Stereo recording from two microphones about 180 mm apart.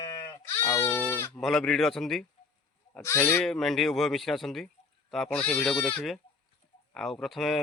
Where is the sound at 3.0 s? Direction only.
15° left (ahead or behind).